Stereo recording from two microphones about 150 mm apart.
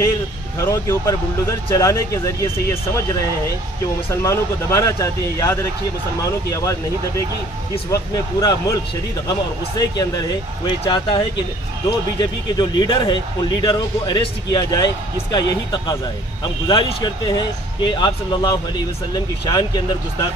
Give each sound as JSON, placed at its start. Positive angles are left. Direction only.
{"t": 0.6, "sound": "speech", "side_deg": 20}
{"t": 4.1, "sound": "speech", "side_deg": 20}
{"t": 7.9, "sound": "speech", "side_deg": 25}